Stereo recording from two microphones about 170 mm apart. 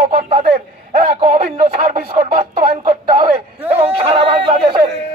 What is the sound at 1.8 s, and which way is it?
Speech, 55° right (ahead or behind).